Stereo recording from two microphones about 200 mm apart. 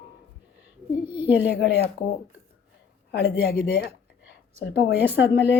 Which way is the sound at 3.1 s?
55° left (ahead or behind).